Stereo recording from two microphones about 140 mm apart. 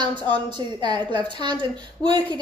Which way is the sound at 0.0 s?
35° right (ahead or behind).